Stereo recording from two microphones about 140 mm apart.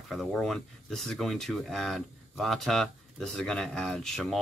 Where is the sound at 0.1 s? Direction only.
Centre (ahead or behind).